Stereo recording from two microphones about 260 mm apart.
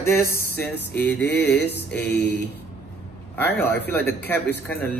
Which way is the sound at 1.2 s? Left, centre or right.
Left.